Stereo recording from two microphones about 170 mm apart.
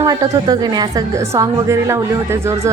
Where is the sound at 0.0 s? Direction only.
20° right (ahead or behind).